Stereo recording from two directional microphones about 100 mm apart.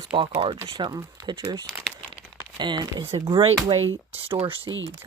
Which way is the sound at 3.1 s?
85° right.